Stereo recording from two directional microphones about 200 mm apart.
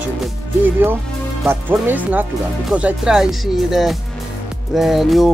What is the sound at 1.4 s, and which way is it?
Speech, 10° right (ahead or behind).